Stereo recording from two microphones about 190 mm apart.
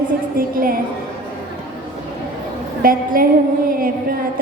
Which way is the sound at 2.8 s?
50° right (ahead or behind).